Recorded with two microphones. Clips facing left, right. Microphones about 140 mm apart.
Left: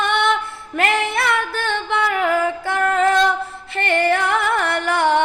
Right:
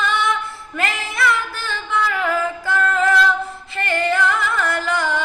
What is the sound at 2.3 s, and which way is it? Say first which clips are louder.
Music: left 2 dB; 60° left (ahead or behind).